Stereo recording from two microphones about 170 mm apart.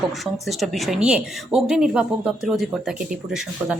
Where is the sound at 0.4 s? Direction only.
Centre (ahead or behind).